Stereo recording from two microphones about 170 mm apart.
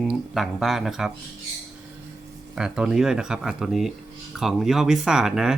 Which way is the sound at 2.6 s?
5° right (ahead or behind).